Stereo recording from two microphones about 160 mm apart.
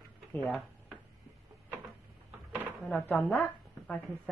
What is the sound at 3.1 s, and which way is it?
A woman's voice, 10° left (ahead or behind).